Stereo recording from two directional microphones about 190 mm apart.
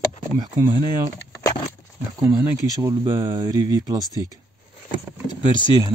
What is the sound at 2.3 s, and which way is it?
Speech, 15° right (ahead or behind).